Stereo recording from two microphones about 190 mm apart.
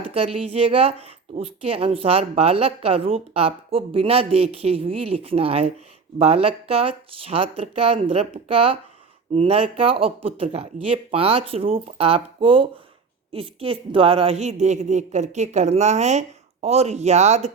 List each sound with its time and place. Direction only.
0.1 s speech: 30° right (ahead or behind)